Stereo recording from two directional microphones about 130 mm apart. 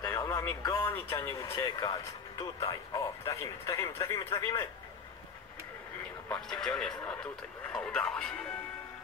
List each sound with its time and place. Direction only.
0.0 s radio: 25° left (ahead or behind)
0.6 s speech: 25° left (ahead or behind)
6.2 s speech: 10° left (ahead or behind)